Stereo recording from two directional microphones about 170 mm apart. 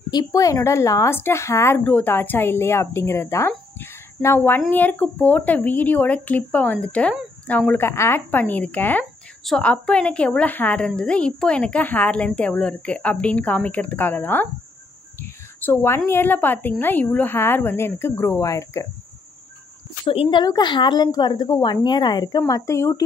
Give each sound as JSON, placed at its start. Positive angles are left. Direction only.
{"t": 0.1, "sound": "speech", "side_deg": 20}
{"t": 15.1, "sound": "a sound", "side_deg": 10}
{"t": 16.1, "sound": "speech", "side_deg": 10}
{"t": 20.1, "sound": "speech", "side_deg": 30}